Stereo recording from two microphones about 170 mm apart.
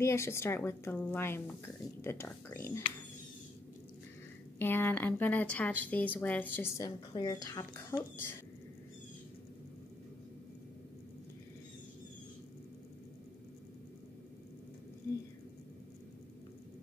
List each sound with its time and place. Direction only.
0.0 s speech: 15° left (ahead or behind)
4.6 s speech: 10° left (ahead or behind)